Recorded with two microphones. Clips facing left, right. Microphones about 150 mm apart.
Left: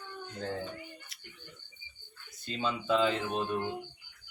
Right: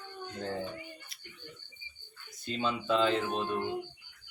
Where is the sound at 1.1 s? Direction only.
90° left.